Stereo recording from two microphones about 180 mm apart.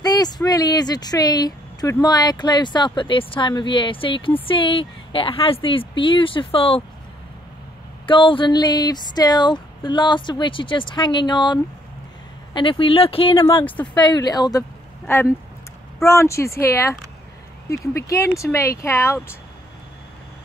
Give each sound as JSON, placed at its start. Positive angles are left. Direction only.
{"t": 0.0, "sound": "a woman's voice", "side_deg": 20}
{"t": 8.1, "sound": "a woman's voice", "side_deg": 30}
{"t": 13.5, "sound": "speech", "side_deg": 10}
{"t": 13.9, "sound": "a woman's voice", "side_deg": 25}